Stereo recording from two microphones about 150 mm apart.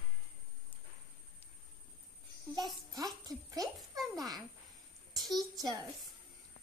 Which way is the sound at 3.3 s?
25° right (ahead or behind).